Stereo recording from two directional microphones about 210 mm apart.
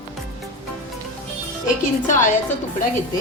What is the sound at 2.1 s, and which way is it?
Speech, 35° left (ahead or behind).